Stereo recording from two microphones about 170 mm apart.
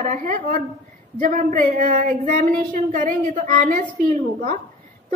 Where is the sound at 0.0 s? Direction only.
50° right (ahead or behind).